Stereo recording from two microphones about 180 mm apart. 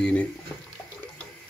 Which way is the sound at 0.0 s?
5° left (ahead or behind).